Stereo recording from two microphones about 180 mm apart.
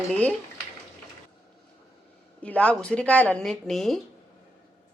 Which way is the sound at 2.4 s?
5° left (ahead or behind).